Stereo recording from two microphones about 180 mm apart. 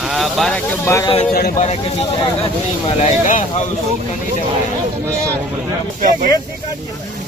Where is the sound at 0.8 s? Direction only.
15° left (ahead or behind).